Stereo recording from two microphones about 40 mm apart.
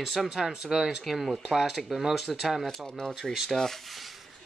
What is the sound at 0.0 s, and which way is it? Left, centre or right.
Speech, centre.